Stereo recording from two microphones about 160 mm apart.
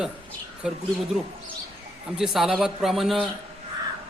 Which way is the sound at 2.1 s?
5° right (ahead or behind).